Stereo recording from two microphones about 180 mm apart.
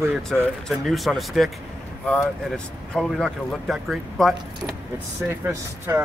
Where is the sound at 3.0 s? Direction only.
5° left (ahead or behind).